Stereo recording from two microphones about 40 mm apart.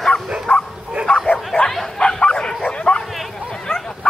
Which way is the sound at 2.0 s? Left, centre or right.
Left.